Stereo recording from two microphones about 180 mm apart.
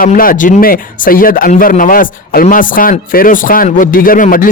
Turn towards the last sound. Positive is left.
turn(degrees=50)  # may be behind; listen again after turning